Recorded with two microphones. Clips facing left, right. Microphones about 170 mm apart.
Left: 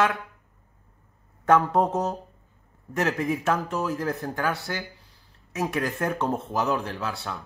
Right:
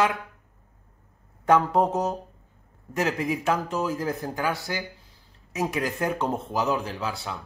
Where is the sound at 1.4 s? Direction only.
15° right (ahead or behind).